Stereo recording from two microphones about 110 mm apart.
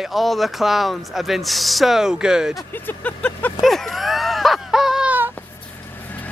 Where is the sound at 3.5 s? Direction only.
Centre (ahead or behind).